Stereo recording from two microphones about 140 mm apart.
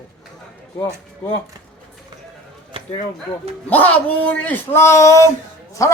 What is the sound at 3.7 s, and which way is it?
A man's voice, 10° left (ahead or behind).